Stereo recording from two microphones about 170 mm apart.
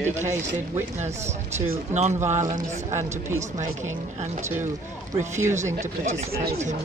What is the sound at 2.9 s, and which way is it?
Speech, 15° right (ahead or behind).